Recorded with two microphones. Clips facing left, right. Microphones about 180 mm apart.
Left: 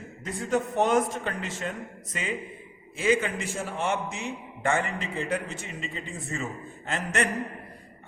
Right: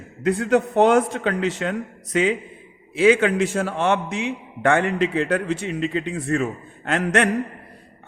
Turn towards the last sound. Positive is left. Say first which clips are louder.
# right 8 dB
turn(degrees=-70)  # may be behind; listen again after turning